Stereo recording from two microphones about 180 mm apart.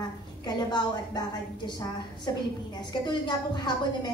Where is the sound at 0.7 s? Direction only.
25° left (ahead or behind).